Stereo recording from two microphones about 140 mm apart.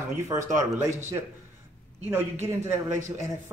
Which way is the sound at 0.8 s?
20° right (ahead or behind).